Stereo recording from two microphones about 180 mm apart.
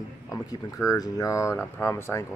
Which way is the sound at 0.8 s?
20° left (ahead or behind).